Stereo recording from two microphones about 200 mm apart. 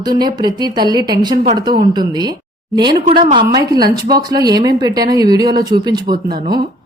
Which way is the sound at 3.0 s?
35° right (ahead or behind).